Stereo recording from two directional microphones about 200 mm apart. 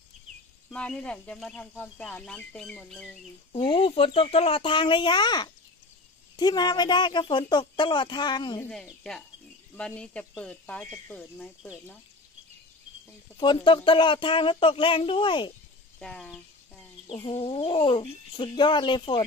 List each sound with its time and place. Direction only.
0.7 s speech: 5° left (ahead or behind)
3.5 s speech: 25° left (ahead or behind)
9.8 s speech: 5° left (ahead or behind)
13.4 s speech: 25° left (ahead or behind)
16.0 s speech: centre (ahead or behind)
17.1 s speech: 25° left (ahead or behind)